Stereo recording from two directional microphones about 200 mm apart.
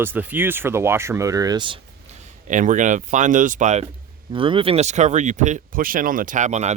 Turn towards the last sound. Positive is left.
turn(degrees=-35)  # may be behind; listen again after turning